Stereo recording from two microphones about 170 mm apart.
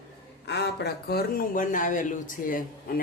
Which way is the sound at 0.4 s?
75° left (ahead or behind).